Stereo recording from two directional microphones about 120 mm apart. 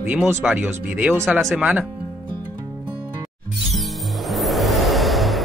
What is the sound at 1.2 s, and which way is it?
Speech, centre (ahead or behind).